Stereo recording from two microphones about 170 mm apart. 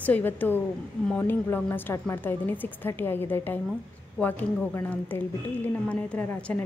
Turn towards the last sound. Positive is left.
turn(degrees=10)  # may be behind; listen again after turning